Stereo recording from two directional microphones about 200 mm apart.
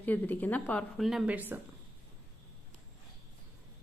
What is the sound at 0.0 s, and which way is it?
A woman's voice, 10° left (ahead or behind).